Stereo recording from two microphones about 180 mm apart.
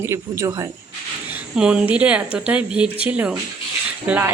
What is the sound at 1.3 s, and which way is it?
Speech, 5° right (ahead or behind).